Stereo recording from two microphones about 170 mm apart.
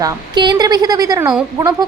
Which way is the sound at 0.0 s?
25° right (ahead or behind).